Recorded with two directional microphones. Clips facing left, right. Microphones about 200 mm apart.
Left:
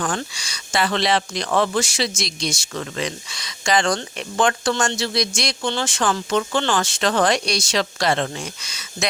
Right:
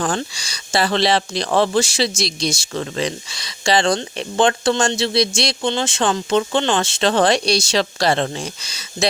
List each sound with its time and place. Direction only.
0.0 s speech: 30° right (ahead or behind)